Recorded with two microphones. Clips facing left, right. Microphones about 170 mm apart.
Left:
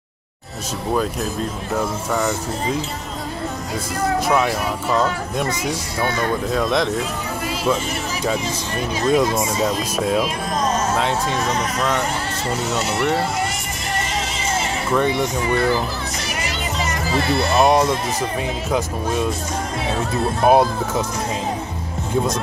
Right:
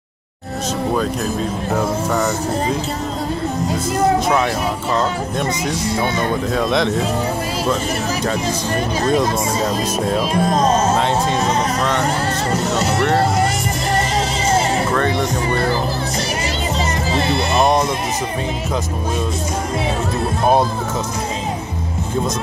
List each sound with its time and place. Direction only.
2.1 s speech: centre (ahead or behind)
4.9 s speech: 5° left (ahead or behind)
9.1 s speech: 5° left (ahead or behind)
10.3 s speech: 30° right (ahead or behind)
15.0 s speech: 10° left (ahead or behind)
15.4 s speech: 35° right (ahead or behind)
17.1 s speech: 20° right (ahead or behind)
17.6 s speech: 10° left (ahead or behind)